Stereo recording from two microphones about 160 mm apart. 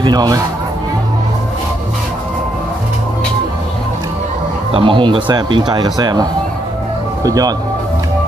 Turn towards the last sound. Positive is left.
turn(degrees=-20)  # may be behind; listen again after turning